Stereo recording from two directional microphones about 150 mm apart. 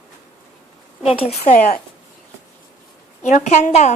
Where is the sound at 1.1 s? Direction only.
40° left (ahead or behind).